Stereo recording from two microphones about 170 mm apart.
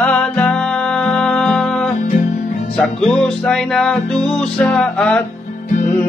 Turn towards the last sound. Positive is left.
turn(degrees=5)  # may be behind; listen again after turning